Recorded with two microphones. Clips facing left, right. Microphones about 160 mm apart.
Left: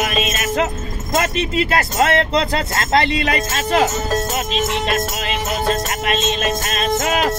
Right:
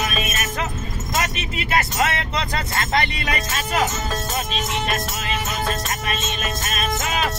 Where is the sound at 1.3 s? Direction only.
35° left (ahead or behind).